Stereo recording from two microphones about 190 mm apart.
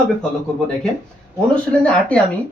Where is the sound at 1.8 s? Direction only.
5° left (ahead or behind).